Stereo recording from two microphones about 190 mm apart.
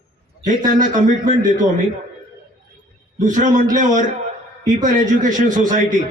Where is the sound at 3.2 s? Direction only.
40° right (ahead or behind).